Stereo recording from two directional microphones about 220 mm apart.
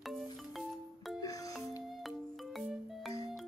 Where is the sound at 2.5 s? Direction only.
Centre (ahead or behind).